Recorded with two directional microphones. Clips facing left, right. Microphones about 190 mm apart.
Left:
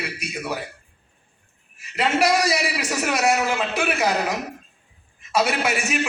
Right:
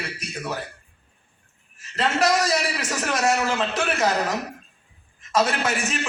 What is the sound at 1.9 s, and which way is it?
A man's voice, 10° left (ahead or behind).